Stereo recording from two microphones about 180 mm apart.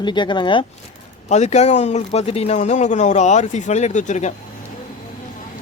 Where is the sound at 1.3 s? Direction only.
40° left (ahead or behind).